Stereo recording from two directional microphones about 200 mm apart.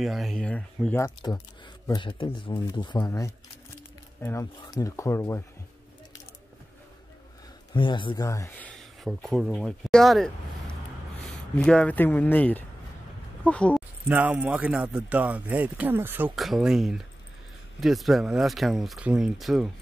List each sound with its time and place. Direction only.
0.0 s speech: centre (ahead or behind)
7.7 s a man's voice: 25° left (ahead or behind); by 13.8 s 5° left (ahead or behind)
14.0 s a man's voice: 10° right (ahead or behind)